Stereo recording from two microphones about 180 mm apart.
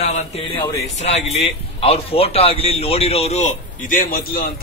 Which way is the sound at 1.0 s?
35° left (ahead or behind).